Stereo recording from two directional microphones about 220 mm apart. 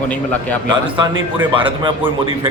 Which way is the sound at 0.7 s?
20° right (ahead or behind).